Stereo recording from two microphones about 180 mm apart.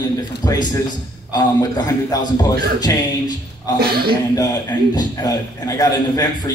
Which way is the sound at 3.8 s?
60° right (ahead or behind).